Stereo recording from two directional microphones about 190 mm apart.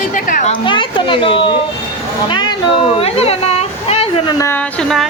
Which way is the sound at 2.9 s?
30° left (ahead or behind).